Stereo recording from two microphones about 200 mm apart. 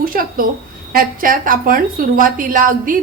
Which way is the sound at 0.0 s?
45° right (ahead or behind).